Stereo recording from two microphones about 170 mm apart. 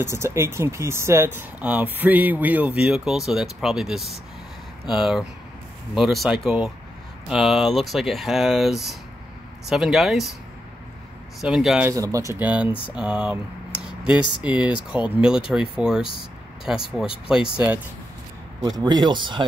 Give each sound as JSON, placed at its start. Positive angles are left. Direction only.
{"t": 0.0, "sound": "speech", "side_deg": -15}
{"t": 11.4, "sound": "speech", "side_deg": -5}
{"t": 11.9, "sound": "speech", "side_deg": -20}
{"t": 18.8, "sound": "speech", "side_deg": -25}